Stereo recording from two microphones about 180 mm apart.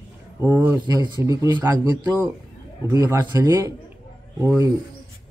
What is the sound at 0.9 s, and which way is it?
Speech, 25° right (ahead or behind).